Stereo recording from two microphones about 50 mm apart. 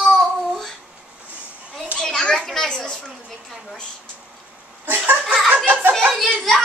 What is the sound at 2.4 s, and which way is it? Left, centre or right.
Chatter, centre.